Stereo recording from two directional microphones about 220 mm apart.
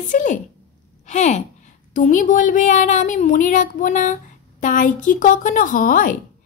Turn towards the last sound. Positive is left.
turn(degrees=40)  # may be behind; listen again after turning